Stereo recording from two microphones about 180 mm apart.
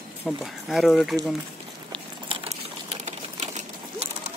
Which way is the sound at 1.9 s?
30° right (ahead or behind).